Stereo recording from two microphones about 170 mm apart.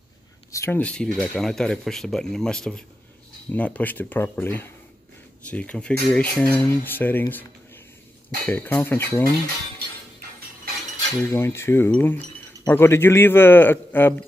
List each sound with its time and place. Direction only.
0.5 s speech: 15° left (ahead or behind)
8.5 s speech: 10° left (ahead or behind)
11.2 s speech: 15° left (ahead or behind)